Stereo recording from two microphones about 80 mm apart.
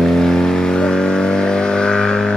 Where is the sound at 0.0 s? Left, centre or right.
Centre.